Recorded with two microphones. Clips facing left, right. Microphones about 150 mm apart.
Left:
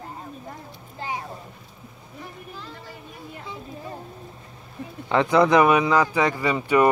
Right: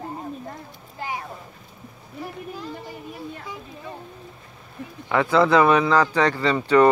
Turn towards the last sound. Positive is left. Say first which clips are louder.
# right 3 dB
turn(degrees=10)  # may be behind; listen again after turning